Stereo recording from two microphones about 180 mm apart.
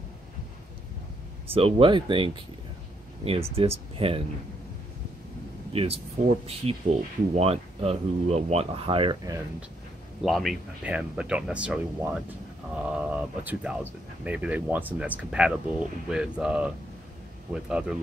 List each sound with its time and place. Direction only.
1.5 s speech: 30° right (ahead or behind)
5.7 s speech: 35° right (ahead or behind)
10.2 s speech: centre (ahead or behind)
12.9 s a sound: 5° right (ahead or behind)
14.2 s speech: 10° right (ahead or behind)